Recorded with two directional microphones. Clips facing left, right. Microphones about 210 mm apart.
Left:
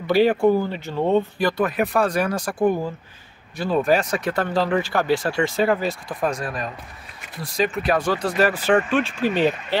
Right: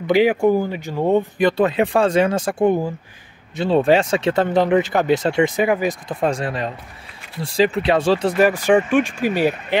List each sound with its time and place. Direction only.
0.0 s speech: 15° right (ahead or behind)
1.6 s speech: 25° right (ahead or behind)
6.2 s speech: 25° right (ahead or behind)
8.4 s speech: 15° right (ahead or behind)